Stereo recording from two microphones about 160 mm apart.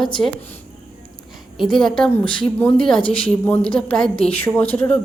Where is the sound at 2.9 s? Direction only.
35° left (ahead or behind).